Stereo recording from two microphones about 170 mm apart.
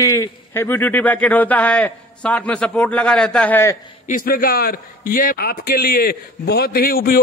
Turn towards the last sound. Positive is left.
turn(degrees=60)  # may be behind; listen again after turning